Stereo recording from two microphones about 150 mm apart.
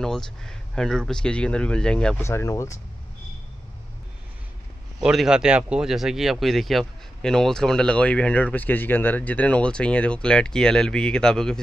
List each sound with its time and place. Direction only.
0.0 s speech: 5° left (ahead or behind)
2.2 s speech: 20° left (ahead or behind)
5.0 s speech: 5° right (ahead or behind)